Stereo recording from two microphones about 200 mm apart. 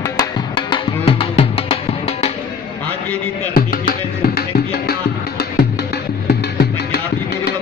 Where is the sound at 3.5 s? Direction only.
50° left (ahead or behind).